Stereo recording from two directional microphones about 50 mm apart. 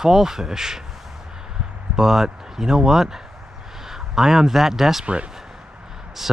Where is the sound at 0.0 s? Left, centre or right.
Centre.